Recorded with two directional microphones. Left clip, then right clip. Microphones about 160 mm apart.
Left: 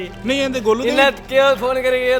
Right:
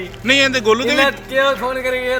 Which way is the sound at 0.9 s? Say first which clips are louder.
Left 1 dB; 40° left (ahead or behind).